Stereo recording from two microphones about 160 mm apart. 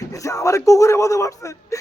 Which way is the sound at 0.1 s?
20° left (ahead or behind).